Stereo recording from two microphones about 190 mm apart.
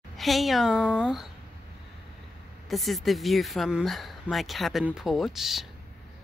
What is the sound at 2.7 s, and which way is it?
Speech, centre (ahead or behind).